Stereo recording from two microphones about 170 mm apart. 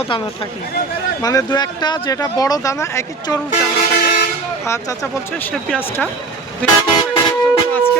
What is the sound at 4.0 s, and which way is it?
Toot, 60° left (ahead or behind).